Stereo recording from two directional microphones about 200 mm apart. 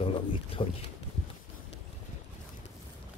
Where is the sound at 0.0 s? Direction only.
25° left (ahead or behind).